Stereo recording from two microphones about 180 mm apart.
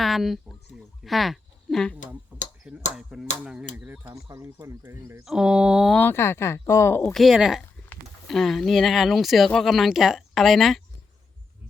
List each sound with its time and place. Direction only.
0.0 s a sound: centre (ahead or behind)
2.3 s tick-tock: 10° right (ahead or behind)
2.9 s a sound: 5° right (ahead or behind)
3.4 s speech: 5° right (ahead or behind)
5.2 s speech: 5° right (ahead or behind)
6.0 s speech: 10° left (ahead or behind)
7.1 s speech: centre (ahead or behind)